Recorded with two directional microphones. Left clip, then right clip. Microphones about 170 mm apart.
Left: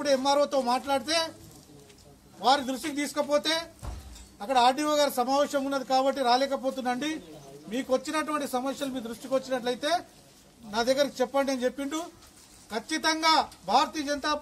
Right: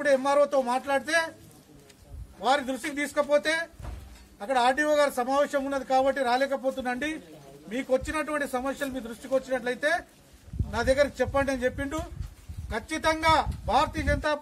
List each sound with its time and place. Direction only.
0.0 s a man's voice: 15° right (ahead or behind)
2.4 s a man's voice: 15° right (ahead or behind)